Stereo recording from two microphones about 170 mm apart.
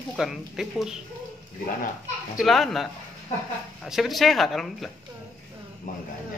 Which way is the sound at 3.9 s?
Centre (ahead or behind).